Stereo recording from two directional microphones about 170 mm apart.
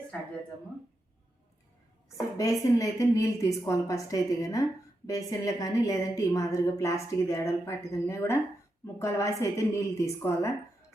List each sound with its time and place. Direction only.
2.0 s a woman's voice: 20° left (ahead or behind)